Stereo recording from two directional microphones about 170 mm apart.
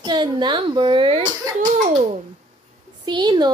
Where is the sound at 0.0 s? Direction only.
25° right (ahead or behind).